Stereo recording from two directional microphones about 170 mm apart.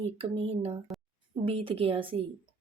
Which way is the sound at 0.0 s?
35° right (ahead or behind).